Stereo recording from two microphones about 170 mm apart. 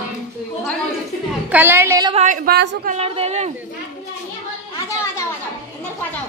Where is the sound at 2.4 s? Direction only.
65° right (ahead or behind).